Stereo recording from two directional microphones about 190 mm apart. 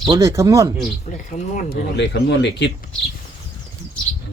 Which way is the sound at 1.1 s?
40° left (ahead or behind).